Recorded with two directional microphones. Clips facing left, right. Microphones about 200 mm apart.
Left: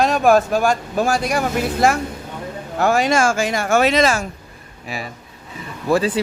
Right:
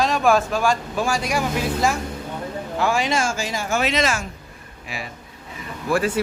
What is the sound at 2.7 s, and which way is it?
Speech, 45° left (ahead or behind).